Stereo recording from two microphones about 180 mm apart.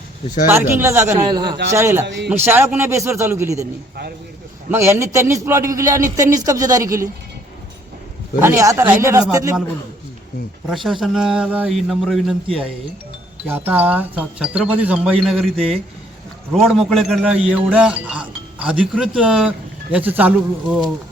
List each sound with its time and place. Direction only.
0.4 s a man's voice: 10° right (ahead or behind)
4.7 s a man's voice: 15° right (ahead or behind)
8.4 s a man's voice: 15° right (ahead or behind)
10.7 s speech: centre (ahead or behind)
13.5 s a man's voice: 10° right (ahead or behind)